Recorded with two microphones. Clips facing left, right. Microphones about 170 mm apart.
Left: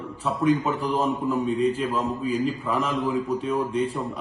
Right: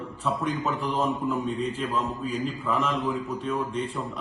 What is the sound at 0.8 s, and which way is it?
Speech, 35° left (ahead or behind).